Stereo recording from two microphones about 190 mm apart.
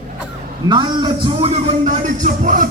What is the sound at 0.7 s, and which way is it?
A man's voice, 25° right (ahead or behind).